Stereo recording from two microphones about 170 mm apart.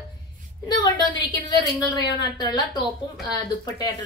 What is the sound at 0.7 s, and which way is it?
A woman's voice, 25° left (ahead or behind).